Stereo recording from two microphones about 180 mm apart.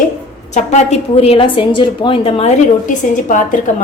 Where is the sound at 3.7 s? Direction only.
45° left (ahead or behind).